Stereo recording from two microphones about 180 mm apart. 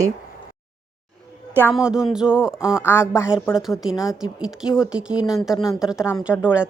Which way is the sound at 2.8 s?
15° left (ahead or behind).